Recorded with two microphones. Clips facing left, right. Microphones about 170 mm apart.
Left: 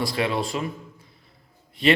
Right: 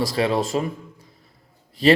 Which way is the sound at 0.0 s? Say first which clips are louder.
Right 4 dB; 40° right (ahead or behind).